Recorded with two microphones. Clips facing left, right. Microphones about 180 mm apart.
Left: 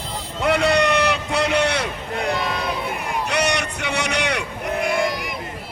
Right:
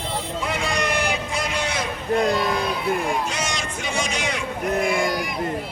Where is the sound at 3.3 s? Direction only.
65° left (ahead or behind).